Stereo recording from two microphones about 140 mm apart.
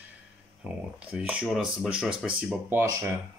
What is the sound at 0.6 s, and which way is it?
Speech, 10° right (ahead or behind).